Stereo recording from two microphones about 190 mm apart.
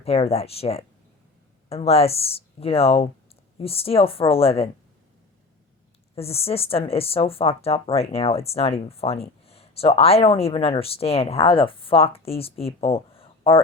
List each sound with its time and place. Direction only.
0.0 s speech: 30° left (ahead or behind)
6.1 s speech: 30° left (ahead or behind)